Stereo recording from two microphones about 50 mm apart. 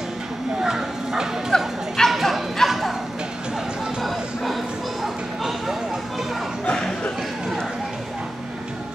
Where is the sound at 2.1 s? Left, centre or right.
Centre.